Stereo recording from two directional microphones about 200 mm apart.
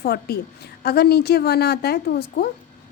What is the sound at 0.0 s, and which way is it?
A woman's voice, 55° left (ahead or behind).